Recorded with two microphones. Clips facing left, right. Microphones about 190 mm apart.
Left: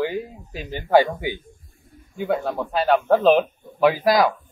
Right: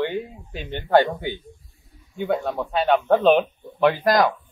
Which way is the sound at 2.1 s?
Centre (ahead or behind).